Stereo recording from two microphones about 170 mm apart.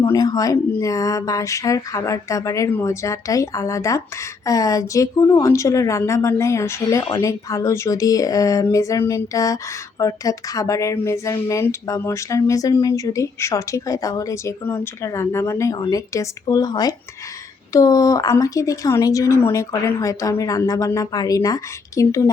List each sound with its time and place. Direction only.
0.1 s speech: 20° left (ahead or behind)